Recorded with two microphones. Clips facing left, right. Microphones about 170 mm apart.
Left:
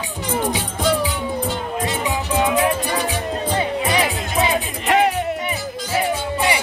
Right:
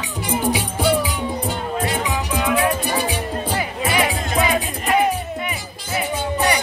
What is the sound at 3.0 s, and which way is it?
Music, 10° right (ahead or behind).